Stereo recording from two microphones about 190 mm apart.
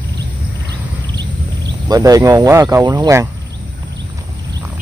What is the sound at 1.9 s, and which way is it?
Speech, 20° right (ahead or behind).